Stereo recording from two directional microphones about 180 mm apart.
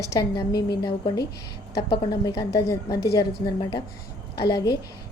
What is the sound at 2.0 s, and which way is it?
Speech, 20° left (ahead or behind).